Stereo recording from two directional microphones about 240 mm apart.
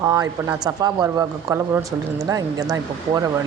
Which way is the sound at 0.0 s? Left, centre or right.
Centre.